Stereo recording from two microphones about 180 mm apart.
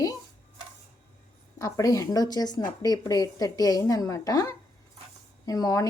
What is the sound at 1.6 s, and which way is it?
A woman's voice, 15° left (ahead or behind).